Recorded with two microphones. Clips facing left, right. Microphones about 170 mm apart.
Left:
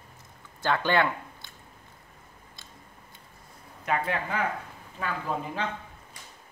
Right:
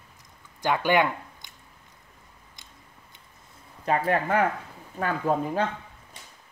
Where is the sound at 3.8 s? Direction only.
40° right (ahead or behind).